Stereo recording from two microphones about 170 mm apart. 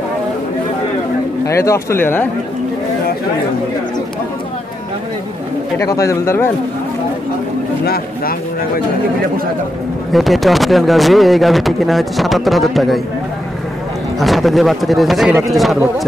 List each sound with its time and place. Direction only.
1.5 s speech: 15° left (ahead or behind)
5.8 s speech: 20° left (ahead or behind)
7.8 s speech: 60° left (ahead or behind)
10.1 s speech: centre (ahead or behind)
14.2 s speech: centre (ahead or behind)